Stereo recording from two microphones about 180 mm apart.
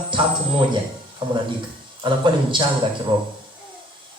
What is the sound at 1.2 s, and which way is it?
Speech, 25° right (ahead or behind).